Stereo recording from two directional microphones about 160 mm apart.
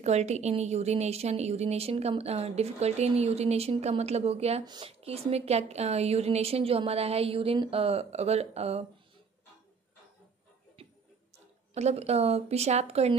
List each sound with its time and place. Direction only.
0.0 s a woman's voice: 45° right (ahead or behind)
4.6 s speech: 25° right (ahead or behind)
5.0 s a woman's voice: 40° right (ahead or behind)
10.8 s tick-tock: 35° right (ahead or behind)
11.3 s speech: 45° right (ahead or behind)